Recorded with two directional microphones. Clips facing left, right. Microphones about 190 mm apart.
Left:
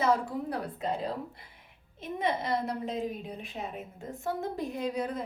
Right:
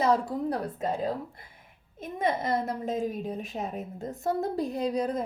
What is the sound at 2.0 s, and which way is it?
A woman's voice, 45° right (ahead or behind).